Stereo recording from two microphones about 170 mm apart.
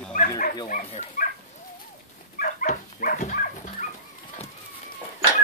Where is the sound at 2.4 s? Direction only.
55° left (ahead or behind).